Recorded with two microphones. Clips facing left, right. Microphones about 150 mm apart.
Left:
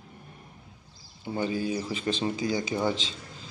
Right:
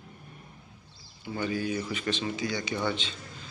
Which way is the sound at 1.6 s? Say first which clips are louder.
Left 1 dB; 35° left (ahead or behind).